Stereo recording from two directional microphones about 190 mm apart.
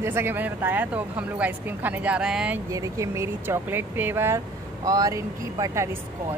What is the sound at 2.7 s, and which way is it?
A woman's voice, 15° right (ahead or behind).